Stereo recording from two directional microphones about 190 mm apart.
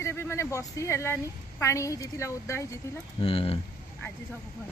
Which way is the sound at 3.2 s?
30° left (ahead or behind).